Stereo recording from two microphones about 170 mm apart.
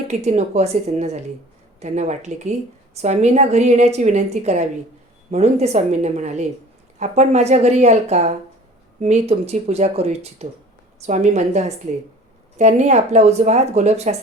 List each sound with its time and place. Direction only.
0.1 s a woman's voice: 40° right (ahead or behind)